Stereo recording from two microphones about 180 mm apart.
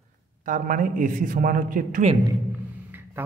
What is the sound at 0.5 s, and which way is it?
A man's voice, 45° right (ahead or behind).